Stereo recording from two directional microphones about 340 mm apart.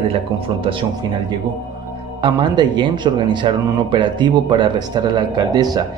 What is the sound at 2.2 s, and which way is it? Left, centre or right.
Speech, centre.